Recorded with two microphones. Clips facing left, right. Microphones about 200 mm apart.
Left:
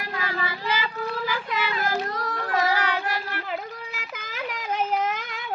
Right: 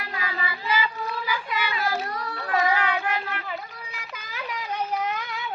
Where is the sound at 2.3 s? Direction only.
40° left (ahead or behind).